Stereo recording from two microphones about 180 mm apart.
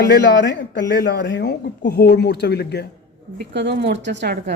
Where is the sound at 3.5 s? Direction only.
70° right (ahead or behind).